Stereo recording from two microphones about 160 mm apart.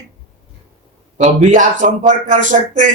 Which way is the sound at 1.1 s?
50° right (ahead or behind).